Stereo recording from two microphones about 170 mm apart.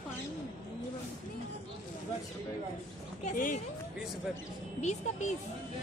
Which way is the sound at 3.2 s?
50° left (ahead or behind).